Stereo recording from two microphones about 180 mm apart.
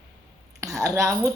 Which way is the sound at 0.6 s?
15° right (ahead or behind).